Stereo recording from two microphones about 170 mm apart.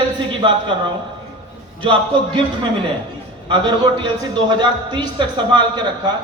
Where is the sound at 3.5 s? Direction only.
25° right (ahead or behind).